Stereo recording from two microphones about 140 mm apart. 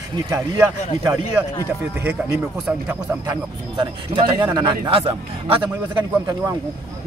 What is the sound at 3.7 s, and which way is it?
Speech, 30° right (ahead or behind).